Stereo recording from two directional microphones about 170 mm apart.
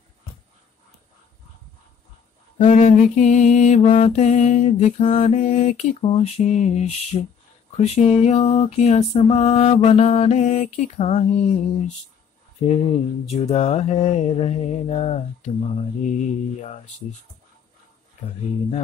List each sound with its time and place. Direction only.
2.6 s mantra: 45° left (ahead or behind)
12.6 s mantra: 40° left (ahead or behind)